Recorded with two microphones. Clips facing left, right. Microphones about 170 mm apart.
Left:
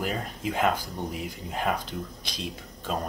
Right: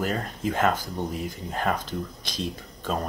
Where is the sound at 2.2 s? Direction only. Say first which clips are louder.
Right 5 dB; 45° right (ahead or behind).